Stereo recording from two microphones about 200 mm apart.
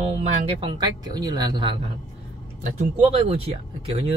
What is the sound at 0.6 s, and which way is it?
Speech, 20° right (ahead or behind).